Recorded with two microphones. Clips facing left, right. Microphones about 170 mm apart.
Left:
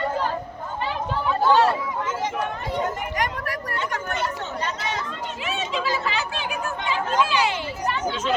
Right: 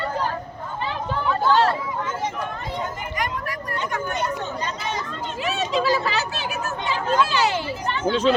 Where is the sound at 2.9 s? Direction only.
75° left (ahead or behind).